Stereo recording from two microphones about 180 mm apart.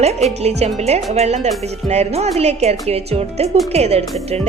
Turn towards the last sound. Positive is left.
turn(degrees=-35)  # may be behind; listen again after turning